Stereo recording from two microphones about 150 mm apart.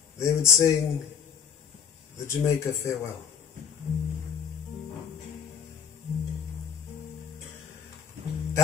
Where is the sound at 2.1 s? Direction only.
20° left (ahead or behind).